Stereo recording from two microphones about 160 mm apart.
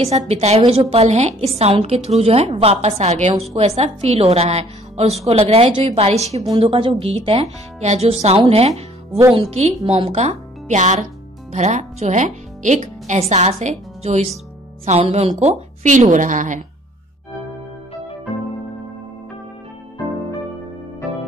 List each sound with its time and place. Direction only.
0.3 s a woman's voice: 40° right (ahead or behind)